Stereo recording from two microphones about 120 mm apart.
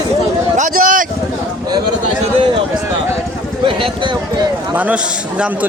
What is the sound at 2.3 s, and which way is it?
Speech, 45° right (ahead or behind).